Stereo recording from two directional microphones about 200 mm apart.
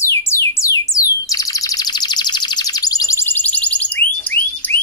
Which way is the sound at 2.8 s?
15° left (ahead or behind).